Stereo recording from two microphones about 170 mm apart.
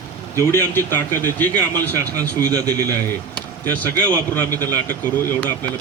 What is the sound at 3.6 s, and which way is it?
Speech, 10° left (ahead or behind).